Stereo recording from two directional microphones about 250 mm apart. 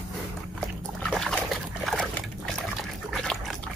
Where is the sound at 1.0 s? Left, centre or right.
Centre.